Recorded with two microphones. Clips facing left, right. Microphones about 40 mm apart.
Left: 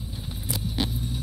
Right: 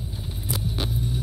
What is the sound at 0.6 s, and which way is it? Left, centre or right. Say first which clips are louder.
Vehicle: left 1 dB; centre.